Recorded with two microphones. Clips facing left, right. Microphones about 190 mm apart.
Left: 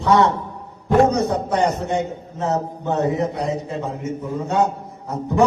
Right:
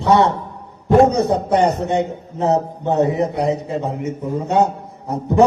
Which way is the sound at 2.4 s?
15° right (ahead or behind).